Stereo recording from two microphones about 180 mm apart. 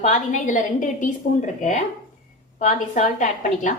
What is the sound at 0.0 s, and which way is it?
A woman's voice, 45° left (ahead or behind).